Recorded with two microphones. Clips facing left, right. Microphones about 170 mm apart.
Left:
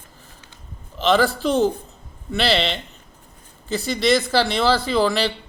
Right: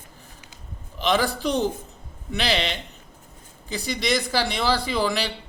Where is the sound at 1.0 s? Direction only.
15° right (ahead or behind).